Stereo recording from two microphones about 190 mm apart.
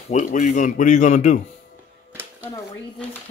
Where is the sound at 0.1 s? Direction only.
40° left (ahead or behind).